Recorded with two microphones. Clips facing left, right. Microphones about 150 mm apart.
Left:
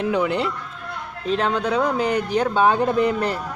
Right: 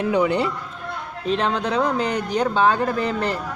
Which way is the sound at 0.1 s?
Centre (ahead or behind).